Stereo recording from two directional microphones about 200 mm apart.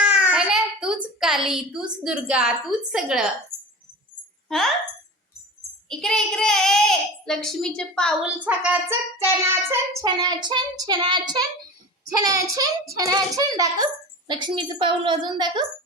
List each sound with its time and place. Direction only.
0.0 s a sound: 5° right (ahead or behind)
1.2 s a child's voice: centre (ahead or behind)
4.4 s speech: centre (ahead or behind)
5.9 s a child's voice: 5° left (ahead or behind)
8.2 s a child's voice: 5° right (ahead or behind)
9.6 s child singing: 15° right (ahead or behind)
13.0 s a child's voice: 15° right (ahead or behind)
14.4 s child singing: 25° right (ahead or behind)